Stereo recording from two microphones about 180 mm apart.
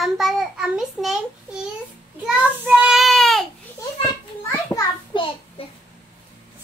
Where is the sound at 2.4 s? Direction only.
5° right (ahead or behind).